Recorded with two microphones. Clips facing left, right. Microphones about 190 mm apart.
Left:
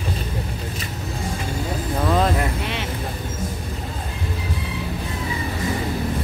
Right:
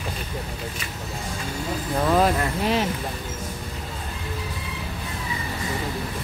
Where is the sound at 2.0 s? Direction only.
5° right (ahead or behind).